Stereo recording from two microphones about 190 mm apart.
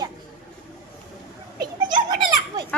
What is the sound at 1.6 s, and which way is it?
A child's voice, 20° right (ahead or behind).